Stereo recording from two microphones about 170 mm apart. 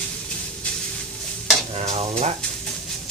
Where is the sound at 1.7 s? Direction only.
40° right (ahead or behind).